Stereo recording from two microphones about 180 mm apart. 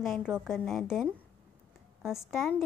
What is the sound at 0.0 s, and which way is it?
A woman's voice, centre (ahead or behind).